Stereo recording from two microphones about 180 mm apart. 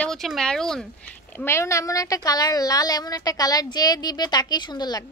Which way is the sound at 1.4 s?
15° left (ahead or behind).